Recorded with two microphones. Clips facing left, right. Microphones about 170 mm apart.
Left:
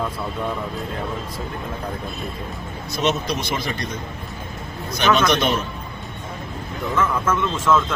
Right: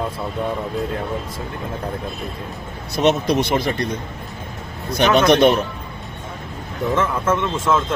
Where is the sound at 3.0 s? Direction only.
60° right (ahead or behind).